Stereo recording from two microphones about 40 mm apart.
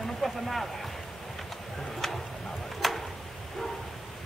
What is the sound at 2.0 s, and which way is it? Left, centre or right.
Speech, centre.